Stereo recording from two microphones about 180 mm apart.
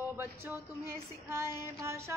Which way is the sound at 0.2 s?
15° right (ahead or behind).